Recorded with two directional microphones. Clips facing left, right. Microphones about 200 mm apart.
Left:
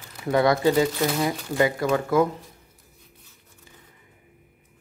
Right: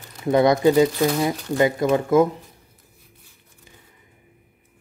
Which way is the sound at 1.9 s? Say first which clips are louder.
Right 4 dB; 20° right (ahead or behind).